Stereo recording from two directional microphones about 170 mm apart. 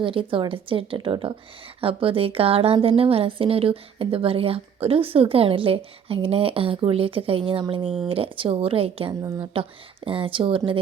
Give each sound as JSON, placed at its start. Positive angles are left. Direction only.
{"t": 0.0, "sound": "a woman's voice", "side_deg": -30}